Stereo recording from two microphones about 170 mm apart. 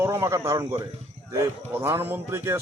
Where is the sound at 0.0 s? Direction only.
15° right (ahead or behind).